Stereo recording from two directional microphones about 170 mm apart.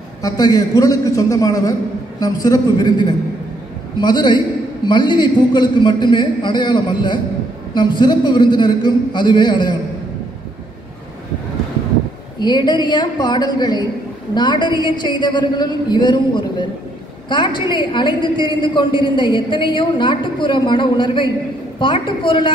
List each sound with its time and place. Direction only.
0.2 s a woman's voice: 20° left (ahead or behind)
12.4 s a woman's voice: 25° left (ahead or behind)